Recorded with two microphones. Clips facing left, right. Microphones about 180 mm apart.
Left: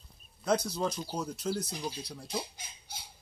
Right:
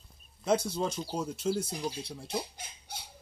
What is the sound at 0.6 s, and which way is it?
Speech, 25° right (ahead or behind).